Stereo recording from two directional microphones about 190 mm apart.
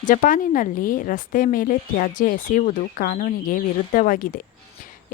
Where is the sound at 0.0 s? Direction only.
45° left (ahead or behind).